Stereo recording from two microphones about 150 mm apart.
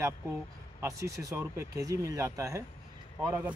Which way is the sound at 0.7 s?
20° right (ahead or behind).